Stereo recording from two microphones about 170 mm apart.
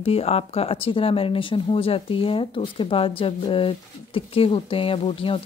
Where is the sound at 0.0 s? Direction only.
35° left (ahead or behind).